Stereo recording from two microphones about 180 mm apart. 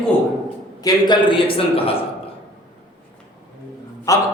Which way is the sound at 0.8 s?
25° left (ahead or behind).